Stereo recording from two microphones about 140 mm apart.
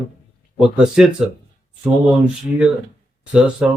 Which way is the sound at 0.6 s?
5° right (ahead or behind).